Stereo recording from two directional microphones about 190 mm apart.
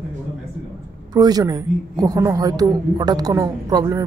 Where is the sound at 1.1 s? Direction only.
20° right (ahead or behind).